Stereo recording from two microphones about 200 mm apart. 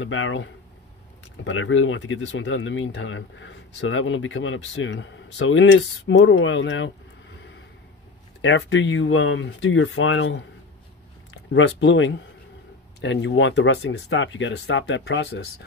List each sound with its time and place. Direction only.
0.0 s speech: 80° left
8.4 s speech: 65° left (ahead or behind)
11.5 s speech: 70° left (ahead or behind)